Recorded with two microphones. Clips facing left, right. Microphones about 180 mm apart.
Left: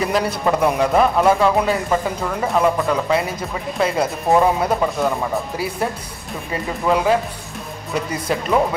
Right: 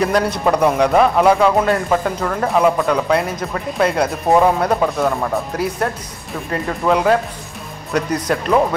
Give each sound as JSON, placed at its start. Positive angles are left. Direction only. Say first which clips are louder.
{"t": 0.0, "sound": "a man's voice", "louder": "right 3 dB", "side_deg": 0}